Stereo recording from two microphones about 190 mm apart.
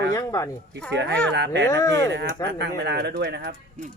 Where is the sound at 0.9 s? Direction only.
65° right (ahead or behind).